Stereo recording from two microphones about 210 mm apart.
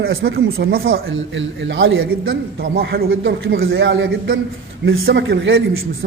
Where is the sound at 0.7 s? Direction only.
75° right (ahead or behind).